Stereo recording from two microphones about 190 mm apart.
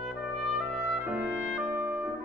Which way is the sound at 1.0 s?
10° right (ahead or behind).